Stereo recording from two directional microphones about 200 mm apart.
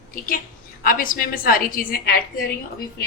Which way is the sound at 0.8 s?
45° left (ahead or behind).